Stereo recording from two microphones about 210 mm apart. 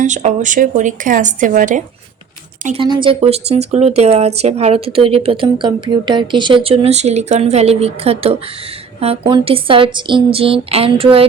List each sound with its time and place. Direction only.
0.0 s speech: 35° right (ahead or behind)
2.6 s speech: 25° right (ahead or behind)